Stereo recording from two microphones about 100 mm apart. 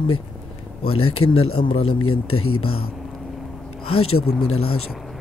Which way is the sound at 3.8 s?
75° left (ahead or behind).